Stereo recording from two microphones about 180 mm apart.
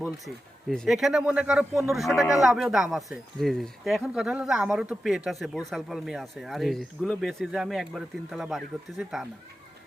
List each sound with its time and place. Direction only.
0.7 s speech: centre (ahead or behind)